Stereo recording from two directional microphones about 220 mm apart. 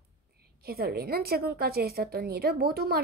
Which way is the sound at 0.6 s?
45° right (ahead or behind).